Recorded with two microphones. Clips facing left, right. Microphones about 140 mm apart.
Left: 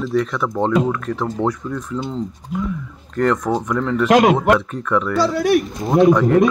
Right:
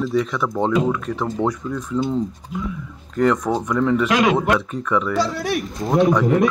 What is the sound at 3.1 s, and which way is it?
Speech, 5° right (ahead or behind).